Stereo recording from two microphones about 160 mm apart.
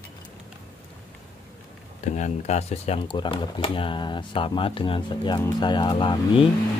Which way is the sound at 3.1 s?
30° left (ahead or behind).